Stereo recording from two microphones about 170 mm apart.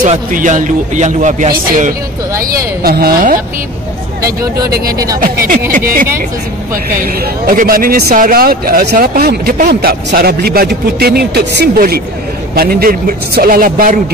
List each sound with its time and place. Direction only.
0.0 s speech: 50° right (ahead or behind)
2.6 s a man's voice: 65° right (ahead or behind)
4.2 s speech: 20° right (ahead or behind)
4.6 s a man's voice: 65° right (ahead or behind)
4.9 s speech: 20° right (ahead or behind)
7.0 s a man's voice: 60° right (ahead or behind)